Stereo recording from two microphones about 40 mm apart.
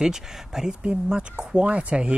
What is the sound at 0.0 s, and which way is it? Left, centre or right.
Speech, centre.